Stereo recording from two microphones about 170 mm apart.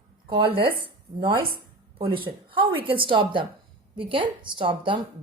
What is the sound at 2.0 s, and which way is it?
A woman's voice, 30° right (ahead or behind).